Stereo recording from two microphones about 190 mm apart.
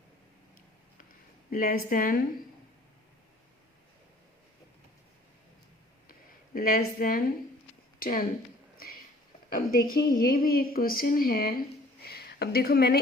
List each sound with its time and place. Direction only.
1.5 s a woman's voice: 50° left (ahead or behind)
6.5 s a woman's voice: 50° left (ahead or behind)
9.6 s a woman's voice: 50° left (ahead or behind)